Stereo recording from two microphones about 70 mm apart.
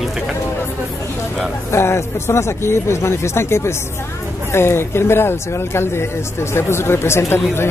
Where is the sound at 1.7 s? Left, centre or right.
Left.